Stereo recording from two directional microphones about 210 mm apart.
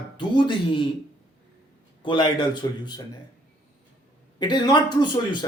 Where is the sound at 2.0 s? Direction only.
20° left (ahead or behind).